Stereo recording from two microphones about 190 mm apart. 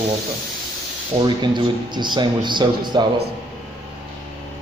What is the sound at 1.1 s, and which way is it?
A man's voice, 25° right (ahead or behind).